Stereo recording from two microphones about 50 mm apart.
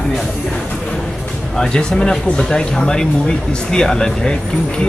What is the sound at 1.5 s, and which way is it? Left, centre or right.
Speech, centre.